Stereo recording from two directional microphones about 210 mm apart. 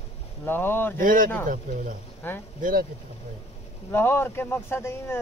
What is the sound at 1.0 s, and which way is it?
Speech, 40° right (ahead or behind).